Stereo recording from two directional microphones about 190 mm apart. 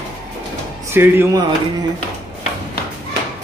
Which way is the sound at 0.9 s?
10° right (ahead or behind).